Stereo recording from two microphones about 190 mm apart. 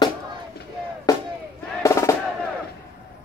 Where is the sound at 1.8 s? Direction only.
15° left (ahead or behind).